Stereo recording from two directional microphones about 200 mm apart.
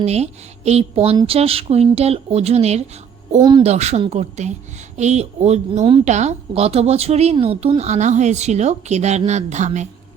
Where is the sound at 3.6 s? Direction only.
35° right (ahead or behind).